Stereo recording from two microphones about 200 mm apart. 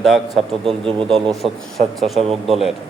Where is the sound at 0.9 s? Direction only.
25° right (ahead or behind).